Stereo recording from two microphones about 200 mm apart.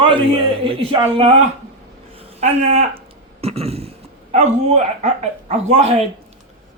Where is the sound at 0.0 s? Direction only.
25° right (ahead or behind).